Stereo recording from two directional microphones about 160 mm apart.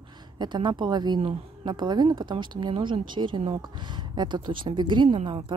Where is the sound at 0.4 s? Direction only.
30° right (ahead or behind).